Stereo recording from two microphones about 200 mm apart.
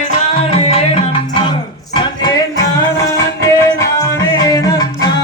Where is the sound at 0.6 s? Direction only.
30° left (ahead or behind).